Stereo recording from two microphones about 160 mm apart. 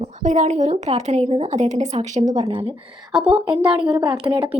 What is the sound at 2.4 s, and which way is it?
Speech, 30° right (ahead or behind).